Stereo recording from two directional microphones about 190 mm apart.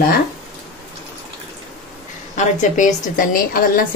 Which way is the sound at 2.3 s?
40° left (ahead or behind).